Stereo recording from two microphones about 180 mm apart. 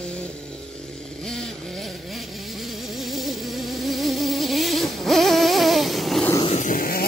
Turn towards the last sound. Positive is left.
turn(degrees=55)  # may be behind; listen again after turning